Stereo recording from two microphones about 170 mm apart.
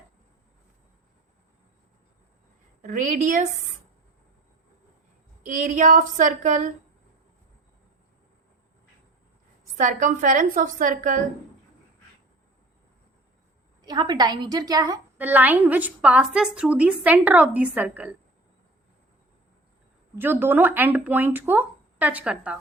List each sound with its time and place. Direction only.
2.8 s a woman's voice: 50° right (ahead or behind)
5.5 s a woman's voice: 50° right (ahead or behind)
9.7 s a woman's voice: 50° right (ahead or behind)
13.8 s a woman's voice: 25° right (ahead or behind)
15.2 s a woman's voice: 10° right (ahead or behind)
20.1 s a woman's voice: 10° right (ahead or behind)